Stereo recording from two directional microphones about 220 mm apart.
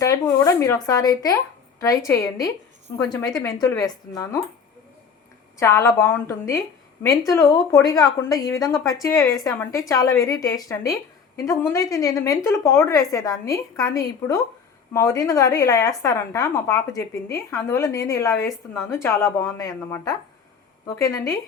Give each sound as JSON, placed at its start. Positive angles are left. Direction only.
{"t": 0.0, "sound": "a woman's voice", "side_deg": 15}
{"t": 5.5, "sound": "a woman's voice", "side_deg": 15}
{"t": 8.6, "sound": "a woman's voice", "side_deg": 0}
{"t": 8.9, "sound": "a woman's voice", "side_deg": 15}